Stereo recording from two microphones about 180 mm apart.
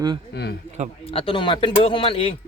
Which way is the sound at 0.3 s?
65° left (ahead or behind).